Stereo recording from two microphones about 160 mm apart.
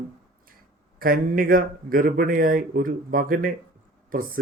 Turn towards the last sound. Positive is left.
turn(degrees=-60)  # may be behind; listen again after turning